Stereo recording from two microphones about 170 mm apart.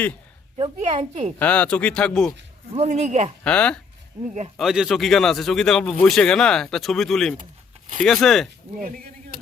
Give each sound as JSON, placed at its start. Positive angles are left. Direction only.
{"t": 0.5, "sound": "a woman's voice", "side_deg": -35}
{"t": 1.4, "sound": "a man's voice", "side_deg": 5}
{"t": 2.7, "sound": "a woman's voice", "side_deg": -40}
{"t": 3.4, "sound": "a man's voice", "side_deg": 5}